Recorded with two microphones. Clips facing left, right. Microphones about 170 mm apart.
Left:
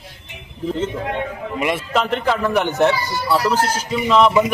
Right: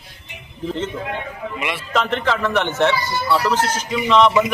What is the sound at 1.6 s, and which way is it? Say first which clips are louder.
Speech: left 7 dB; 40° left (ahead or behind).